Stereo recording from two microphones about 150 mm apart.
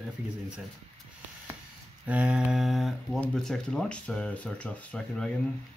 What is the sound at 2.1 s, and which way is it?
Speech, 10° right (ahead or behind).